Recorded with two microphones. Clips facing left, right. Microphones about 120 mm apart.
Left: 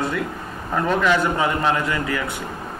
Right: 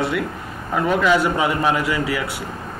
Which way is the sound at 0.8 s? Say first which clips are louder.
Right 2 dB; 10° right (ahead or behind).